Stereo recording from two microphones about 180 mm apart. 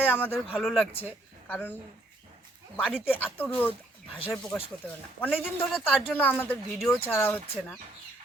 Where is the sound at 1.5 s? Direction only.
10° left (ahead or behind).